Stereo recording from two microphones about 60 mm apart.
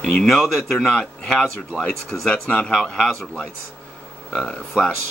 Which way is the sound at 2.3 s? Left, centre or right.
Left.